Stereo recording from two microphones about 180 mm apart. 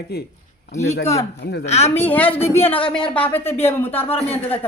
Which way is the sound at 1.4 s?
65° left (ahead or behind).